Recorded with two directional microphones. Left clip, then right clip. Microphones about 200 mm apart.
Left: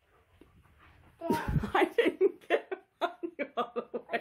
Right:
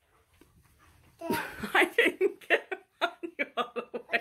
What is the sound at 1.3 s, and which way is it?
Laughter, 15° left (ahead or behind).